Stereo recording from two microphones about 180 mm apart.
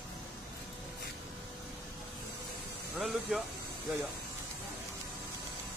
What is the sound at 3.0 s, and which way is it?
Speech, centre (ahead or behind).